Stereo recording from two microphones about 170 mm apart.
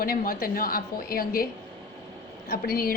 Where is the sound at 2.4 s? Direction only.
60° left (ahead or behind).